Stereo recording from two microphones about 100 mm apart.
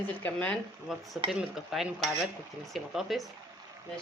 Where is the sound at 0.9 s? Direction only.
Centre (ahead or behind).